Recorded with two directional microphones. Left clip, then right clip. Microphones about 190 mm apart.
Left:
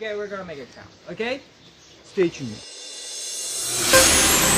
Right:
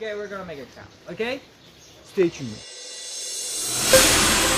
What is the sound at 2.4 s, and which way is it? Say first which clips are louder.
Music: left 1 dB; centre (ahead or behind).